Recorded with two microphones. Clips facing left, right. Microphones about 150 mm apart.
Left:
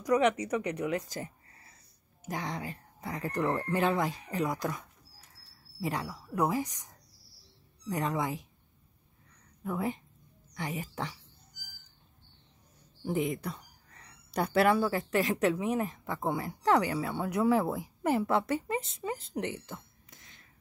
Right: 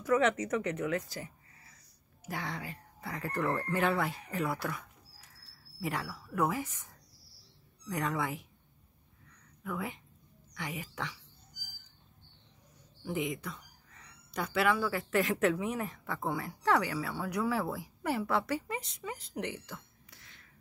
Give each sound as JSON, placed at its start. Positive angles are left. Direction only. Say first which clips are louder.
{"t": 0.0, "sound": "speech", "louder": "left 2 dB", "side_deg": 15}
{"t": 2.2, "sound": "speech", "louder": "left 3 dB", "side_deg": 20}
{"t": 6.5, "sound": "speech", "louder": "left 5 dB", "side_deg": 40}
{"t": 7.8, "sound": "speech", "louder": "left 2 dB", "side_deg": 25}
{"t": 9.6, "sound": "speech", "louder": "left 5 dB", "side_deg": 35}
{"t": 13.0, "sound": "speech", "louder": "left 4 dB", "side_deg": 40}
{"t": 19.6, "sound": "a sound", "louder": "left 2 dB", "side_deg": 20}